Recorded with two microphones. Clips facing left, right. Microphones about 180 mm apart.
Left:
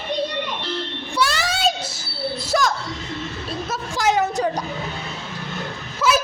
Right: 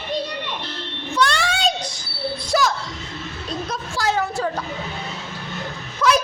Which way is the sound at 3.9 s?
20° left (ahead or behind).